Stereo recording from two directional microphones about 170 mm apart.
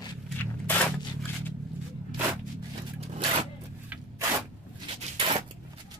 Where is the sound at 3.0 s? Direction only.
35° right (ahead or behind).